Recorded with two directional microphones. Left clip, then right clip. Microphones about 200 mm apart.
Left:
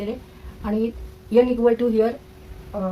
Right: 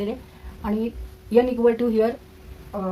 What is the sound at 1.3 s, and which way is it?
Speech, 40° right (ahead or behind).